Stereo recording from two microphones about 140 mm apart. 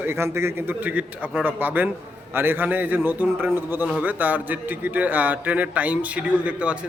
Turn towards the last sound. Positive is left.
turn(degrees=-10)  # may be behind; listen again after turning